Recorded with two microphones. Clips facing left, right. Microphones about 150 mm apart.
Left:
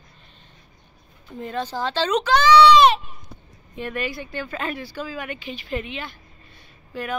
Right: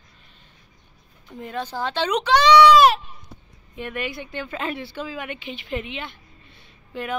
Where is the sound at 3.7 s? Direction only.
15° right (ahead or behind).